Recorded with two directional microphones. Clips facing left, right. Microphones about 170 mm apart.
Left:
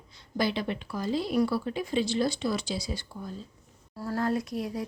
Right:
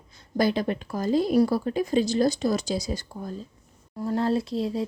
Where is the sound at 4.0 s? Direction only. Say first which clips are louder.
Right 4 dB; 25° right (ahead or behind).